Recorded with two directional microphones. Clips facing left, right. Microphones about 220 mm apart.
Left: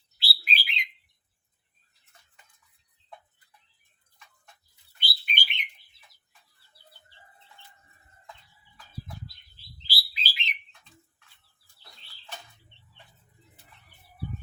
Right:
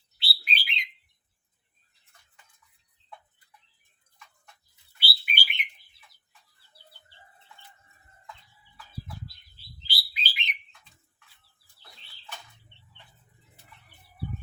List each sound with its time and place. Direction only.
0.2 s bird: centre (ahead or behind)
4.9 s bird: 5° right (ahead or behind)
9.8 s bird: 15° right (ahead or behind)